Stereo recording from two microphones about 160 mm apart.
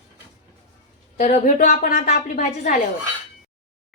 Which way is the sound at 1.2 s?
45° left (ahead or behind).